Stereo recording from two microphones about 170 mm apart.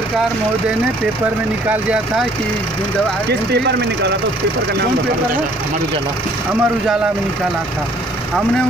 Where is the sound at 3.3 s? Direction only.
85° right.